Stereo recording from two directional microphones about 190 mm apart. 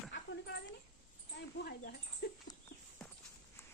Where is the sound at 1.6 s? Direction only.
55° left (ahead or behind).